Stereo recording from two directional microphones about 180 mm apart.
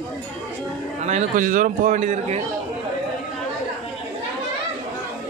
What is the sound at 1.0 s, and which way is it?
A man's voice, 40° right (ahead or behind).